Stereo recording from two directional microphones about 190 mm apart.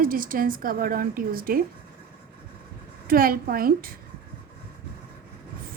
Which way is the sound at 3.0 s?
50° right (ahead or behind).